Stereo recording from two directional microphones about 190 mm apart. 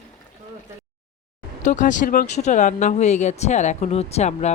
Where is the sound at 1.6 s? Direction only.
40° left (ahead or behind).